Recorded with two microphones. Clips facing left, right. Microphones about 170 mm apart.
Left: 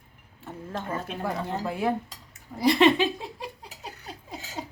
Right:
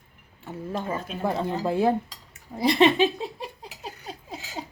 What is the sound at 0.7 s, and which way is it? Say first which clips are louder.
Speech: right 3 dB; 10° right (ahead or behind).